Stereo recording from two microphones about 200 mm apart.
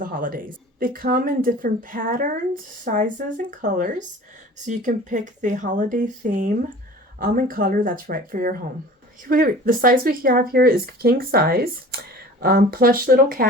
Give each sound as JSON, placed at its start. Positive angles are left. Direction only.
{"t": 0.0, "sound": "speech", "side_deg": -45}